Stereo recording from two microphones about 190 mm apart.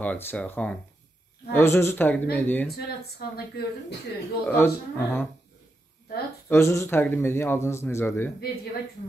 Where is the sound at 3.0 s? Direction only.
55° left (ahead or behind).